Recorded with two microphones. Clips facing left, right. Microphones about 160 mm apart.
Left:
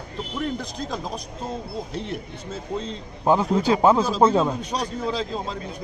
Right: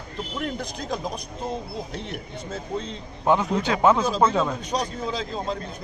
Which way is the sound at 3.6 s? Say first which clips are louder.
Left 2 dB; 35° left (ahead or behind).